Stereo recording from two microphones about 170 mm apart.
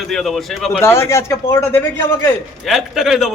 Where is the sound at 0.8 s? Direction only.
15° left (ahead or behind).